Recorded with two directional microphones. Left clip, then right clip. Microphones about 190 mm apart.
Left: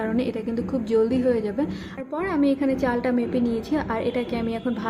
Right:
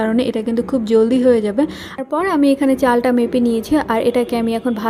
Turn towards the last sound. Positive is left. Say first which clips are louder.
# right 8 dB
turn(degrees=-35)  # may be behind; listen again after turning